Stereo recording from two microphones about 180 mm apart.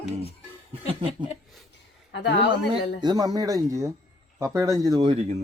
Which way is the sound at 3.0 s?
20° right (ahead or behind).